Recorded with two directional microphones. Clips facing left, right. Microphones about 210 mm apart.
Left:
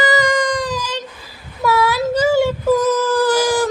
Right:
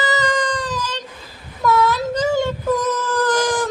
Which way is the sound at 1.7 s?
10° left (ahead or behind).